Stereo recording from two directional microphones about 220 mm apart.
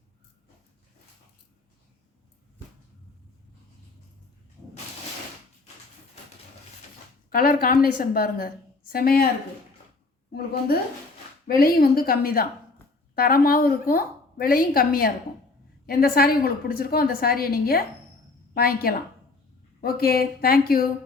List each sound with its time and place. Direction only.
7.3 s a woman's voice: 40° left (ahead or behind)
10.3 s a woman's voice: 45° left (ahead or behind)